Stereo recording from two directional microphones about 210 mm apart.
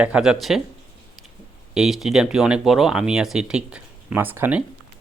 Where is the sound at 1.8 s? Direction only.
Centre (ahead or behind).